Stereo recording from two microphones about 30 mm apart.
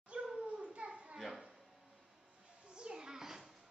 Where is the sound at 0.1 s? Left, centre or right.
Right.